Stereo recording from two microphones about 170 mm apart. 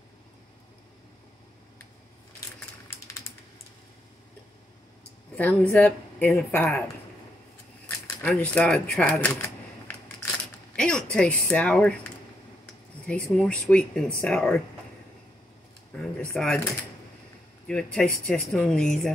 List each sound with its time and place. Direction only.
3.1 s typing: 15° left (ahead or behind)
5.3 s speech: 10° left (ahead or behind)
8.2 s speech: 10° left (ahead or behind)
10.8 s speech: 5° left (ahead or behind)
16.0 s speech: 5° left (ahead or behind)
17.6 s speech: 5° left (ahead or behind)